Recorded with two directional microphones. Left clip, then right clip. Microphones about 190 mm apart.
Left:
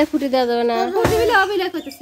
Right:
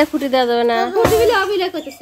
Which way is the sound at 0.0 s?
10° left (ahead or behind).